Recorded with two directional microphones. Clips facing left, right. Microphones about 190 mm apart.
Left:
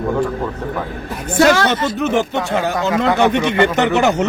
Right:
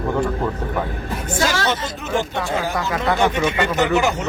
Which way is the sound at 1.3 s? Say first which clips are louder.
Left 8 dB; 65° left (ahead or behind).